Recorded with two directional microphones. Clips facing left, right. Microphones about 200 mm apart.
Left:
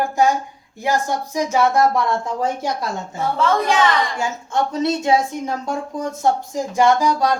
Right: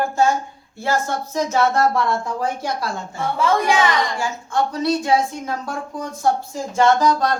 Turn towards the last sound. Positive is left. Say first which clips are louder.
# even
turn(degrees=10)  # may be behind; listen again after turning